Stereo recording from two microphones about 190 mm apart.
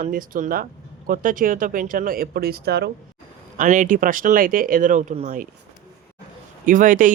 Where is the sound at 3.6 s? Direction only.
45° right (ahead or behind).